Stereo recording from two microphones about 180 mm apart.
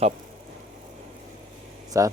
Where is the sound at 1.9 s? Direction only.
15° right (ahead or behind).